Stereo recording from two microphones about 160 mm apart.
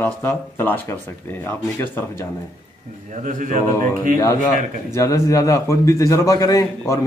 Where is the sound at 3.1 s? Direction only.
55° right (ahead or behind).